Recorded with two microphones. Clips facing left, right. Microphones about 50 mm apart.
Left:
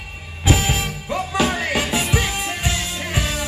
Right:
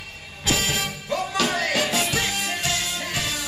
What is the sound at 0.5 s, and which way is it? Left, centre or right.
Music, centre.